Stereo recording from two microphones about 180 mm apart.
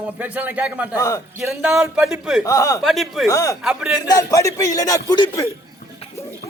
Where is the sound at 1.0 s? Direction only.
15° left (ahead or behind).